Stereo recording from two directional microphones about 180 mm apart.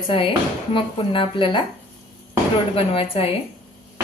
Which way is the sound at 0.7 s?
30° left (ahead or behind).